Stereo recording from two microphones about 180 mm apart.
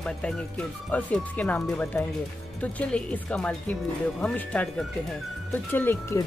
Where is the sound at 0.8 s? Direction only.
5° left (ahead or behind).